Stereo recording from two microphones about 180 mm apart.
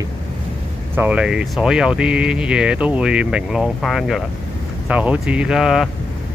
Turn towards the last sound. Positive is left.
turn(degrees=0)  # may be behind; listen again after turning